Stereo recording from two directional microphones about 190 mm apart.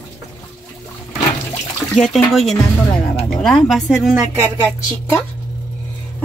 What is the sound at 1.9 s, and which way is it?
A woman's voice, centre (ahead or behind).